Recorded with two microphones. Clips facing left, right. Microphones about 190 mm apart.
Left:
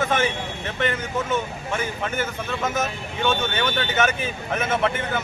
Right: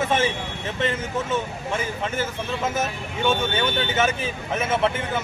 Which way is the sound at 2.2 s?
30° right (ahead or behind).